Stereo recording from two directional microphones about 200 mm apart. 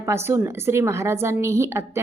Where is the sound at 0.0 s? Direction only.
15° right (ahead or behind).